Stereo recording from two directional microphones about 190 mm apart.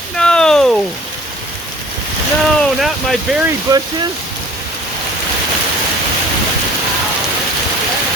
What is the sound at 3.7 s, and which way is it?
Speech, 20° right (ahead or behind).